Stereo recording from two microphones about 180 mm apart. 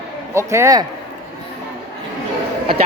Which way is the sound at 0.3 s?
15° right (ahead or behind).